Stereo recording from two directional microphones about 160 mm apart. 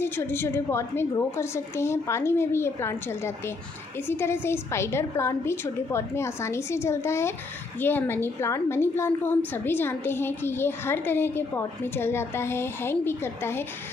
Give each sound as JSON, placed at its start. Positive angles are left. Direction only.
{"t": 0.0, "sound": "a woman's voice", "side_deg": 15}
{"t": 4.1, "sound": "a woman's voice", "side_deg": 15}